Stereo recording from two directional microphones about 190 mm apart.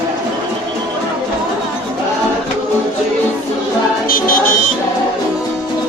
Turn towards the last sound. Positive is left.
turn(degrees=45)  # may be behind; listen again after turning